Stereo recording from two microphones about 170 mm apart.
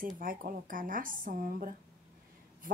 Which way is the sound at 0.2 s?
55° right (ahead or behind).